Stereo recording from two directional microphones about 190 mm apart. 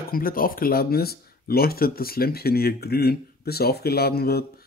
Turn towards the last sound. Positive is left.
turn(degrees=55)  # may be behind; listen again after turning